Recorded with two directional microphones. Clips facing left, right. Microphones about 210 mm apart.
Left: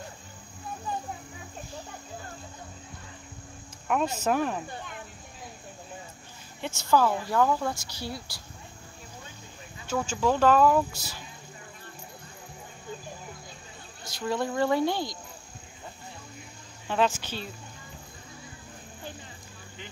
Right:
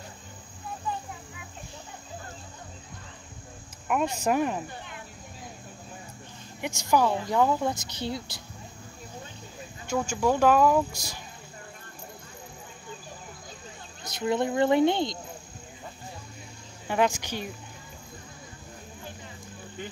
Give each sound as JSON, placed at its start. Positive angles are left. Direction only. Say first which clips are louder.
{"t": 3.8, "sound": "speech", "louder": "even", "side_deg": -10}
{"t": 6.6, "sound": "a woman's voice", "louder": "even", "side_deg": -15}
{"t": 9.8, "sound": "speech", "louder": "right 1 dB", "side_deg": -10}
{"t": 14.0, "sound": "a woman's voice", "louder": "right 3 dB", "side_deg": -20}
{"t": 16.8, "sound": "speech", "louder": "right 1 dB", "side_deg": -15}